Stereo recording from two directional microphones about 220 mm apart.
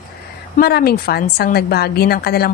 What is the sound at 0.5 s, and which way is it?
A woman's voice, 45° left (ahead or behind).